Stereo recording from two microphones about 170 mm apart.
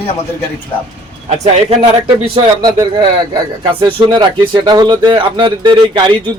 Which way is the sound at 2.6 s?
25° right (ahead or behind).